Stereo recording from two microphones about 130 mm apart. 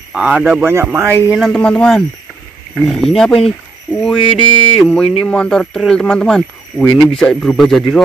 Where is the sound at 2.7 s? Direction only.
Centre (ahead or behind).